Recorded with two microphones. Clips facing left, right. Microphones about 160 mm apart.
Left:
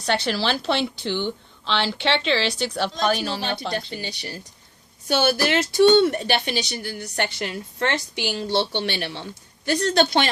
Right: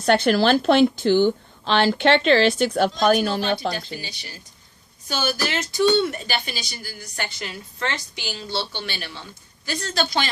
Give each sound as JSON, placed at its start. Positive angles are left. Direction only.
{"t": 0.0, "sound": "speech", "side_deg": -50}
{"t": 5.0, "sound": "speech", "side_deg": 60}